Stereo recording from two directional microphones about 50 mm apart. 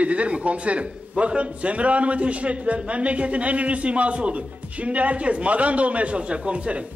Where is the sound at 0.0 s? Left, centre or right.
Right.